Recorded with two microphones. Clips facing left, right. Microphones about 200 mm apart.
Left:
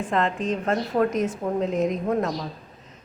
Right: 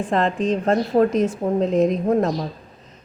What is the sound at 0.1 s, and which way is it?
A woman's voice, 30° right (ahead or behind).